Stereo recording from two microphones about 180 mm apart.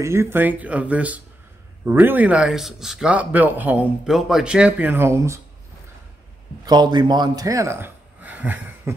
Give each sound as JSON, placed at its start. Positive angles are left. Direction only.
{"t": 0.0, "sound": "speech", "side_deg": -15}
{"t": 6.6, "sound": "speech", "side_deg": -25}